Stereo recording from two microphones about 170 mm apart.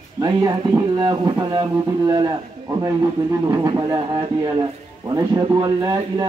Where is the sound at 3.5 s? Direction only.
25° right (ahead or behind).